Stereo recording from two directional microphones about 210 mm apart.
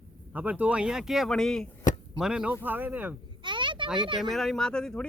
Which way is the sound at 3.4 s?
25° right (ahead or behind).